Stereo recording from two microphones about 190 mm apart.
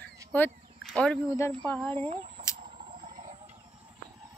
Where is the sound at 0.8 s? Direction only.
5° left (ahead or behind).